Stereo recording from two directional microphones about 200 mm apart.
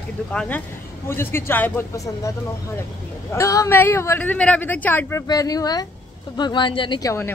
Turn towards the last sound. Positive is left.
turn(degrees=15)  # may be behind; listen again after turning